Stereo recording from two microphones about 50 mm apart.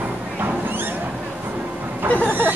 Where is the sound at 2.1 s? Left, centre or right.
Left.